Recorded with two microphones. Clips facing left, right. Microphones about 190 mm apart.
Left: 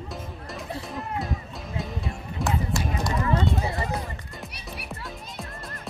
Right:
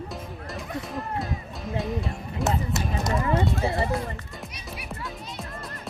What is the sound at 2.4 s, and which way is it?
Music, 20° right (ahead or behind).